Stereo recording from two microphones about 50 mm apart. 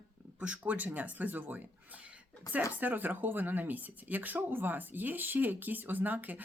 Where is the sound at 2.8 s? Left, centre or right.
Right.